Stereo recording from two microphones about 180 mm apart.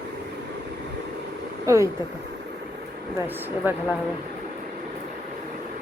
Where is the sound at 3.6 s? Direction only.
10° right (ahead or behind).